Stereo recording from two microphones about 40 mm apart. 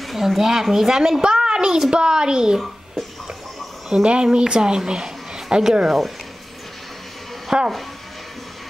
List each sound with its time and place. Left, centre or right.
0.0 s a child's voice: centre
3.9 s a woman's voice: right
5.9 s speech: centre
7.5 s a child's voice: centre